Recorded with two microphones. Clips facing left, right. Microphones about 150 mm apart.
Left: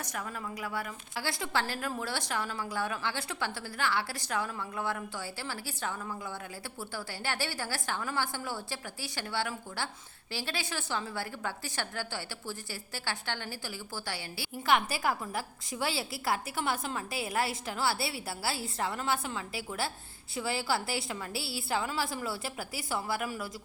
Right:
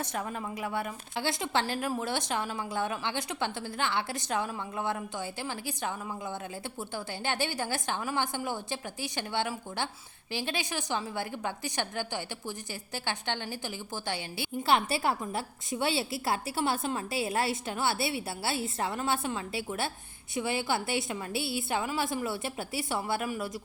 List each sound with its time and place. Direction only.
0.0 s a woman's voice: 25° right (ahead or behind)